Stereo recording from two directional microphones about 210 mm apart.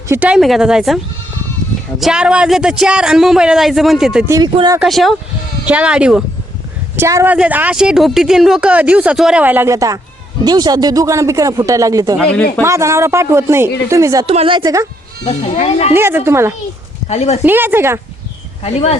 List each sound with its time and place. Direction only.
0.1 s a man's voice: 5° right (ahead or behind)
2.0 s a man's voice: 5° right (ahead or behind)
4.3 s a woman's voice: 20° right (ahead or behind)
4.8 s a man's voice: centre (ahead or behind); by 12.1 s 15° right (ahead or behind)
12.2 s a man's voice: 5° left (ahead or behind)
12.6 s a woman's voice: 15° right (ahead or behind)
14.3 s a woman's voice: 25° right (ahead or behind)
15.2 s speech: 30° left (ahead or behind)
16.0 s a woman's voice: 10° right (ahead or behind)
17.1 s speech: 30° left (ahead or behind)
17.4 s a woman's voice: 10° right (ahead or behind)
18.6 s speech: 30° left (ahead or behind)